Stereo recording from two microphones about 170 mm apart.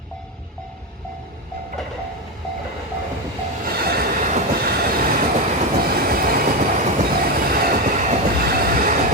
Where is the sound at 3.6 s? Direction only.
65° right (ahead or behind).